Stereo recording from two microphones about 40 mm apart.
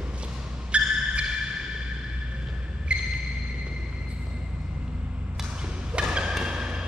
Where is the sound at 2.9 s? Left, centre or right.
Right.